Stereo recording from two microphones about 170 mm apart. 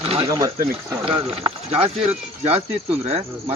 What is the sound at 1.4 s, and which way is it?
Speech, 35° right (ahead or behind).